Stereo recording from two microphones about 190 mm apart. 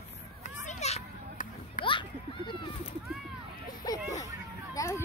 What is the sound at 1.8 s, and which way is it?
Children playing, 25° left (ahead or behind).